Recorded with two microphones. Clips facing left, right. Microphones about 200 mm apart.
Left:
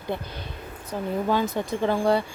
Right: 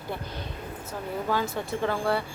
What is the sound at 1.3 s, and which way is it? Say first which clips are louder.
Speech: left 2 dB; 20° left (ahead or behind).